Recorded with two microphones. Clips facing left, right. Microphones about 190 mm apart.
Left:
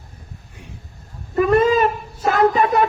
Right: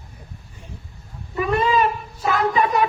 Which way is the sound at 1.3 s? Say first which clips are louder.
Left 5 dB; 45° left (ahead or behind).